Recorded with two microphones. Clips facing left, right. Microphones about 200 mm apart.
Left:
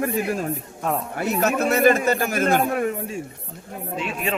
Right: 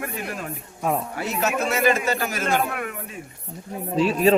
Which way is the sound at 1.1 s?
50° left (ahead or behind).